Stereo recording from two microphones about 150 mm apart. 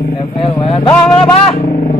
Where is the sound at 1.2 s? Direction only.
35° left (ahead or behind).